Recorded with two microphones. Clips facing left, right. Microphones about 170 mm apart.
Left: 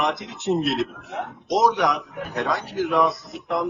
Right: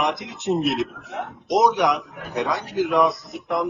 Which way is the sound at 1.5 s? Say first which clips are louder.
Right 1 dB; centre (ahead or behind).